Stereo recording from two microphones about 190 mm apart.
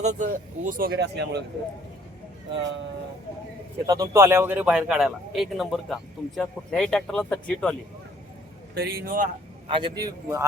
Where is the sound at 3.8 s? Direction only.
20° right (ahead or behind); by 7.7 s 5° left (ahead or behind).